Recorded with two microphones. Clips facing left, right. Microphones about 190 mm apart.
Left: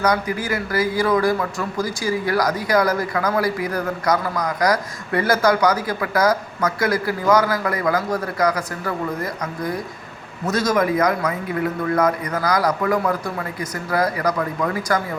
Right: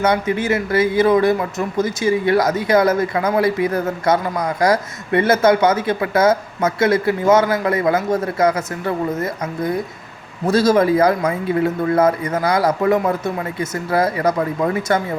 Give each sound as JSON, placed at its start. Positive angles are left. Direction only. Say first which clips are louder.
{"t": 0.0, "sound": "a man's voice", "louder": "right 3 dB", "side_deg": -25}